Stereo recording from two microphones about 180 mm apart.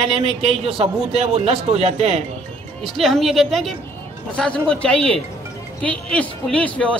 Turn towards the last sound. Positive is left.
turn(degrees=5)  # may be behind; listen again after turning